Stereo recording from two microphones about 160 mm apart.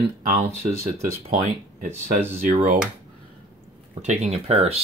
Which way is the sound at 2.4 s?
60° right (ahead or behind).